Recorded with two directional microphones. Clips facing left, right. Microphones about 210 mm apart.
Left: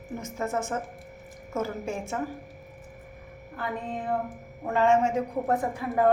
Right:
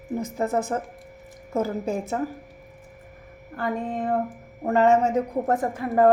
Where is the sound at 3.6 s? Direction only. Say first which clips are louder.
Right 6 dB; 45° right (ahead or behind).